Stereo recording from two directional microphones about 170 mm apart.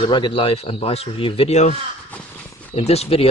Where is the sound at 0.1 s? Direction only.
30° left (ahead or behind).